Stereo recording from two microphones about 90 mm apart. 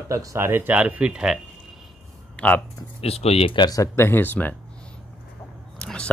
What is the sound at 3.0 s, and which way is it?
Speech, 90° left.